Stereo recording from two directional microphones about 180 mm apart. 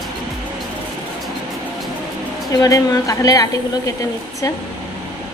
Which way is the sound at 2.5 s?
20° left (ahead or behind).